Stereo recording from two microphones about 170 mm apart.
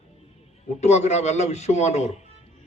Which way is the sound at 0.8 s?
40° left (ahead or behind).